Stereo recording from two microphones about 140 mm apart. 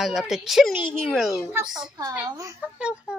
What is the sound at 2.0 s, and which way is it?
Speech, 25° right (ahead or behind).